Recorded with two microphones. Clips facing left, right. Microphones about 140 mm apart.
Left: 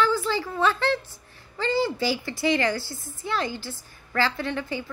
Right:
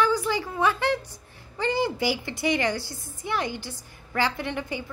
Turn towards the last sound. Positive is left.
turn(degrees=-20)  # may be behind; listen again after turning